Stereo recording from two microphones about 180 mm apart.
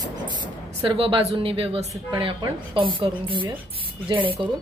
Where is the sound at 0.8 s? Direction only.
30° right (ahead or behind).